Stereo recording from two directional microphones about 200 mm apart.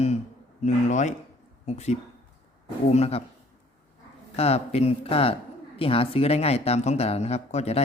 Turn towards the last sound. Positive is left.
turn(degrees=35)  # may be behind; listen again after turning